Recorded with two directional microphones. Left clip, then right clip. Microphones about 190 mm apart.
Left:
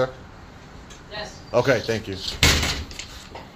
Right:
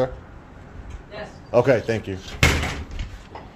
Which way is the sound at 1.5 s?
20° right (ahead or behind).